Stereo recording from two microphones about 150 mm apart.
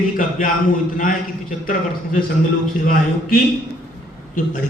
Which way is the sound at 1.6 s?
65° left (ahead or behind).